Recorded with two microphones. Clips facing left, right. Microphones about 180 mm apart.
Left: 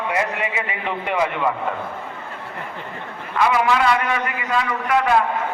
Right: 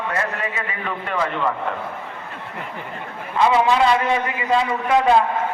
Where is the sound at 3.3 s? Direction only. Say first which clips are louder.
Right 2 dB; 25° right (ahead or behind).